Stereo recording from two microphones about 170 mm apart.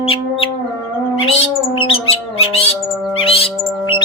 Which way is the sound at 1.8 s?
35° left (ahead or behind).